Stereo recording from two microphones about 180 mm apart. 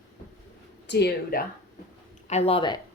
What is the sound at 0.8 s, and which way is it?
Speech, 70° left (ahead or behind).